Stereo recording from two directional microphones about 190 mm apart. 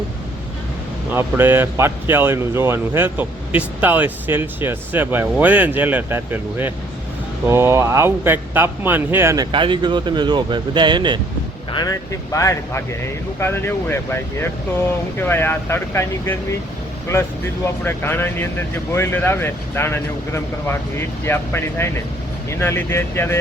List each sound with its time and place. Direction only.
1.1 s speech: 10° right (ahead or behind)
11.7 s speech: 20° left (ahead or behind)
17.8 s speech: 10° left (ahead or behind)